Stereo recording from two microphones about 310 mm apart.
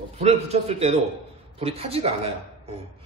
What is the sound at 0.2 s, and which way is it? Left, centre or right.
A man's voice, centre.